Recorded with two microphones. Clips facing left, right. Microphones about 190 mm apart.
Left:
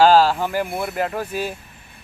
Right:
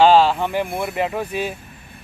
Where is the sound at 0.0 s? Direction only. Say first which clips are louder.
Right 1 dB; 5° left (ahead or behind).